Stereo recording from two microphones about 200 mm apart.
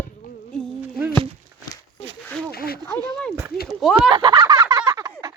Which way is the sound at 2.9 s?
5° left (ahead or behind).